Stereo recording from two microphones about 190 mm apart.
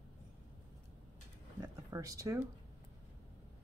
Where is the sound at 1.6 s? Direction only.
20° right (ahead or behind).